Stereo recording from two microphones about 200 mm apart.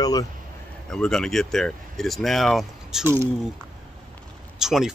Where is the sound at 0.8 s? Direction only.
5° left (ahead or behind).